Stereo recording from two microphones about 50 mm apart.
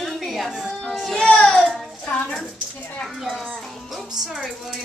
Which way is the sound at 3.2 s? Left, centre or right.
Centre.